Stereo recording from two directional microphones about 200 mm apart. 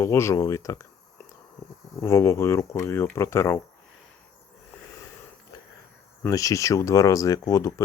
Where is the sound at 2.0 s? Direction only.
15° left (ahead or behind).